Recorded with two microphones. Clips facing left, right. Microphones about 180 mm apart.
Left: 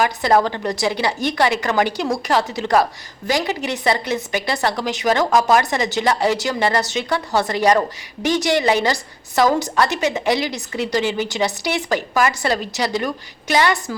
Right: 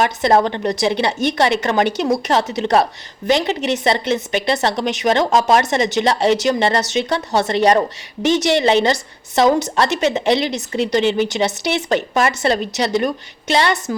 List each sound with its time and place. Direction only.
0.0 s a woman's voice: 25° right (ahead or behind)